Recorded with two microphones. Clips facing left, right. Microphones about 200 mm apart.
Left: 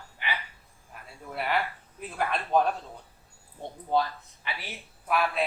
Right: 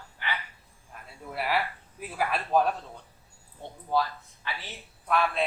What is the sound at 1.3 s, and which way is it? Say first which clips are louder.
Speech: even; 5° right (ahead or behind).